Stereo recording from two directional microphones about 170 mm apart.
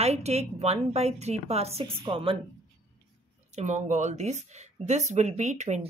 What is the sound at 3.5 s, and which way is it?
Speech, 40° right (ahead or behind).